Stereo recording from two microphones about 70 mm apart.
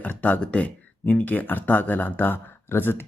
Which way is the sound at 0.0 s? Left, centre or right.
Left.